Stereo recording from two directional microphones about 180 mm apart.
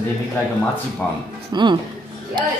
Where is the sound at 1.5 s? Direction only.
25° right (ahead or behind).